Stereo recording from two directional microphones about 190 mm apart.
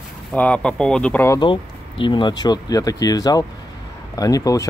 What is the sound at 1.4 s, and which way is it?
Speech, 25° left (ahead or behind).